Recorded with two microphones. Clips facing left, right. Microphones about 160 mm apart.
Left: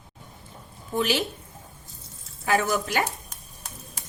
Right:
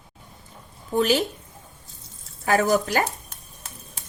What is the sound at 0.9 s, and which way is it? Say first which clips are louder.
Speech: right 4 dB; 45° right (ahead or behind).